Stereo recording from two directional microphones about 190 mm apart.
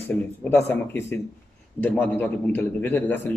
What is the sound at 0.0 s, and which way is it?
A man's voice, 10° left (ahead or behind).